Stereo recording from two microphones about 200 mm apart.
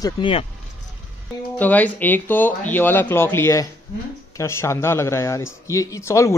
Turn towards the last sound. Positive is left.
turn(degrees=15)  # may be behind; listen again after turning